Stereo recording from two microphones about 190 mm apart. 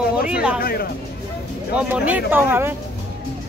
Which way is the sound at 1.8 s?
10° right (ahead or behind).